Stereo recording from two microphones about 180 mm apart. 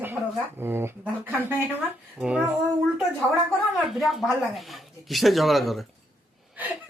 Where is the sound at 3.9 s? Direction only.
Centre (ahead or behind).